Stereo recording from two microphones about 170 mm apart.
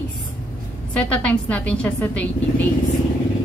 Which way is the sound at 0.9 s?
5° left (ahead or behind).